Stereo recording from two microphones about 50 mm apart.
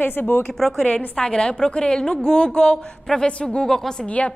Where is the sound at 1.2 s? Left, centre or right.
Centre.